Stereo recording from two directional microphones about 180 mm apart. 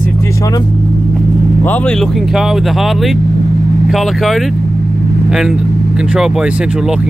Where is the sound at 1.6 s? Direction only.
10° left (ahead or behind).